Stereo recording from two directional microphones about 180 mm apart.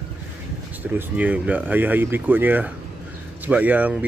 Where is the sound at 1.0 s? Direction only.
10° right (ahead or behind).